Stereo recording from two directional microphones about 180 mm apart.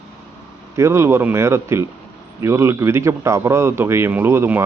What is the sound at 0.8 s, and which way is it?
Speech, 15° right (ahead or behind).